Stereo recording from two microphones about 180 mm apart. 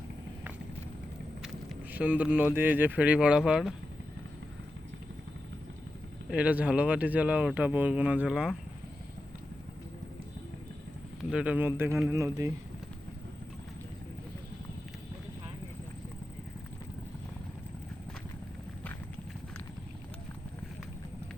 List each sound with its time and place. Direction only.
1.4 s speech: 5° right (ahead or behind)
6.3 s speech: 5° right (ahead or behind)
11.3 s speech: 5° right (ahead or behind)